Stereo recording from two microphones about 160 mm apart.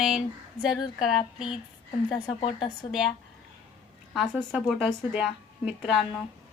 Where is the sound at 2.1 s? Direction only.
30° left (ahead or behind).